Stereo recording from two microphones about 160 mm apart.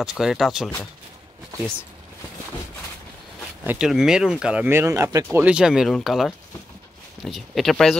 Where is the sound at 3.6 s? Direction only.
5° right (ahead or behind).